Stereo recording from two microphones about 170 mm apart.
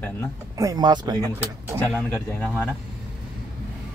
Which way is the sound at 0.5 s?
20° right (ahead or behind).